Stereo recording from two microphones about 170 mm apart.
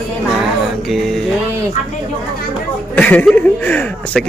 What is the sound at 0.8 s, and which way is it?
Music, centre (ahead or behind).